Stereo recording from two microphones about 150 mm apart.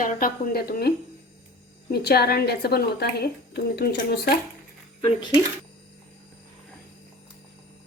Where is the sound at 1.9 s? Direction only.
90° left.